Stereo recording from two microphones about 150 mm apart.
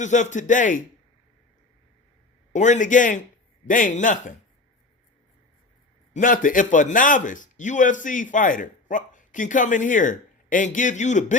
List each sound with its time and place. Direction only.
0.0 s a man's voice: 55° left (ahead or behind)
2.5 s a man's voice: 55° left (ahead or behind)
6.1 s a man's voice: 60° left (ahead or behind)